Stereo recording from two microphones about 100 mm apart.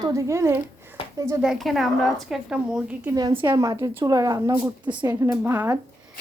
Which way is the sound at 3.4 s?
35° right (ahead or behind).